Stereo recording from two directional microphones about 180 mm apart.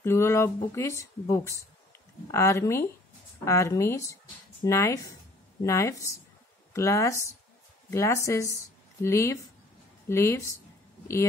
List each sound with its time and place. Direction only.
0.0 s speech: 15° left (ahead or behind)